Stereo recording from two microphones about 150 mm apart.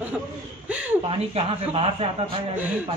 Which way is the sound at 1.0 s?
40° right (ahead or behind).